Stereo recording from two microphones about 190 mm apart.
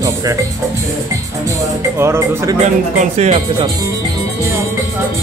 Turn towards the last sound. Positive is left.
turn(degrees=-35)  # may be behind; listen again after turning